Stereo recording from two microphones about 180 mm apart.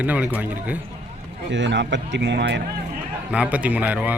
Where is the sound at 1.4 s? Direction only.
80° right.